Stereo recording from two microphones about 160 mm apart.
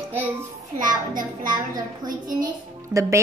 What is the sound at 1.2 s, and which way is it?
A woman's voice, 25° right (ahead or behind).